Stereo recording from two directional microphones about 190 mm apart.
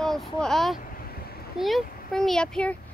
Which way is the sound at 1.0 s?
50° left (ahead or behind).